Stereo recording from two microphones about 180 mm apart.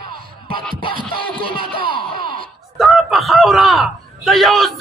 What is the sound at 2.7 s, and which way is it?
A man's voice, centre (ahead or behind).